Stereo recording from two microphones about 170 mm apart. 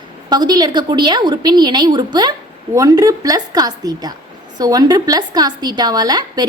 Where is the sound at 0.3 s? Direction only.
25° right (ahead or behind).